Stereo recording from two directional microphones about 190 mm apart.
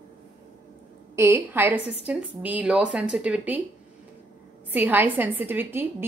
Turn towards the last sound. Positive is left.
turn(degrees=-10)  # may be behind; listen again after turning